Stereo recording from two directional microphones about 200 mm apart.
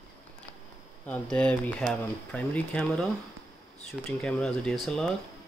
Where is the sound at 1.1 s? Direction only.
5° left (ahead or behind).